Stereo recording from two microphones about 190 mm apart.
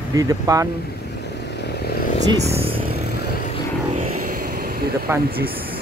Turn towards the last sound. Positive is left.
turn(degrees=-10)  # may be behind; listen again after turning